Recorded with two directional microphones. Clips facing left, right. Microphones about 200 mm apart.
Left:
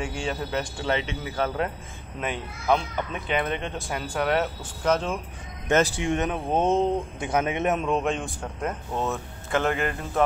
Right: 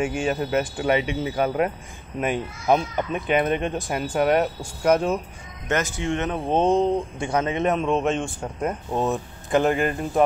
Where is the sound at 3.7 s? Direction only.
20° right (ahead or behind).